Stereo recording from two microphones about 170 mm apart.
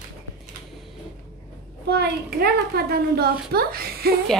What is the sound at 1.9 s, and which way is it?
A child's voice, 70° right (ahead or behind).